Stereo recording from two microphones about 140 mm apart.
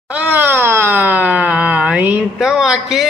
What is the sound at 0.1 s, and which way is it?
Wail, 10° right (ahead or behind).